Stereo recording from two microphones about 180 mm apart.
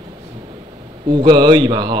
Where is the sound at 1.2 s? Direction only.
25° right (ahead or behind).